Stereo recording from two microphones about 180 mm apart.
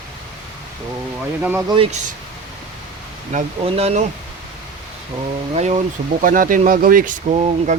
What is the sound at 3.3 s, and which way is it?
Speech, 40° right (ahead or behind).